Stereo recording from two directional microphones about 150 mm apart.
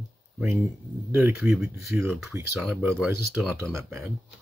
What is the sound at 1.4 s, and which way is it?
Speech, 5° right (ahead or behind).